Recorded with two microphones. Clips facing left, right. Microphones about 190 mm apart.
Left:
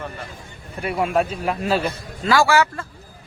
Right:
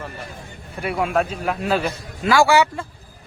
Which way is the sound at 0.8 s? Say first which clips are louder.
Even; centre (ahead or behind).